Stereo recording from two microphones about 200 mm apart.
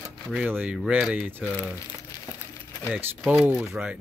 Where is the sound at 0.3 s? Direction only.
5° right (ahead or behind).